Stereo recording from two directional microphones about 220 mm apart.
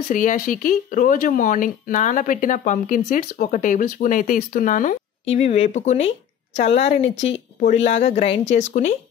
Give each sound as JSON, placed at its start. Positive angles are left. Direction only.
{"t": 0.1, "sound": "speech", "side_deg": 35}